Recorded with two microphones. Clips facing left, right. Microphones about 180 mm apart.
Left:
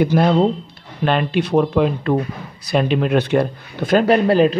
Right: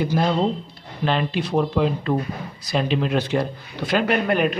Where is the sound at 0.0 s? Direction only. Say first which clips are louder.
Left 6 dB; 65° left (ahead or behind).